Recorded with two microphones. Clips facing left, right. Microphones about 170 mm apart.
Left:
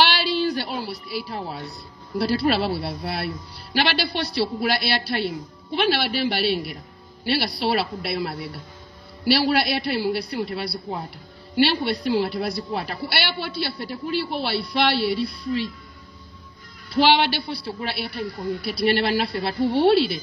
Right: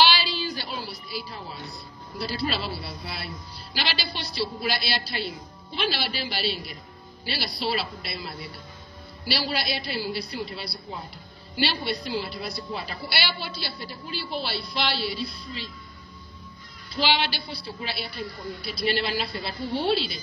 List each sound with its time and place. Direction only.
0.0 s a sound: 65° left (ahead or behind)
1.3 s a man's voice: 65° left (ahead or behind)
16.9 s a man's voice: 65° left (ahead or behind)